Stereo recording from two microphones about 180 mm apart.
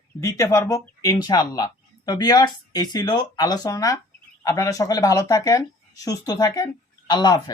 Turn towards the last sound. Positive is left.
turn(degrees=20)  # may be behind; listen again after turning